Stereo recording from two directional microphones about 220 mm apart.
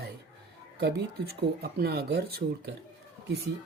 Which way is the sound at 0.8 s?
45° right (ahead or behind).